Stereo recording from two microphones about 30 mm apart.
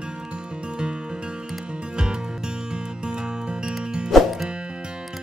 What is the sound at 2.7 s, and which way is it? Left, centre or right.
Music, right.